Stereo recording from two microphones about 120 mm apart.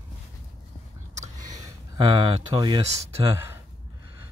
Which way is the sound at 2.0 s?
45° right (ahead or behind).